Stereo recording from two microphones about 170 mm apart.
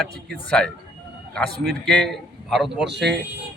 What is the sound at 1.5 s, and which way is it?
Speech, 70° right (ahead or behind).